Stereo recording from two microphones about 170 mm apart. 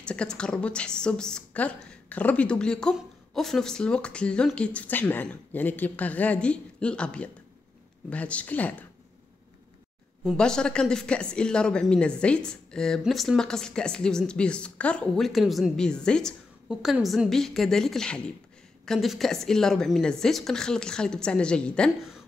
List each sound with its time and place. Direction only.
0.0 s speech: 5° left (ahead or behind)
10.2 s speech: 5° left (ahead or behind)